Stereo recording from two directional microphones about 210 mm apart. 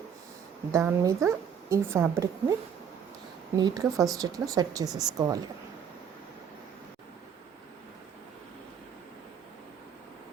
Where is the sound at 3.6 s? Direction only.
20° right (ahead or behind).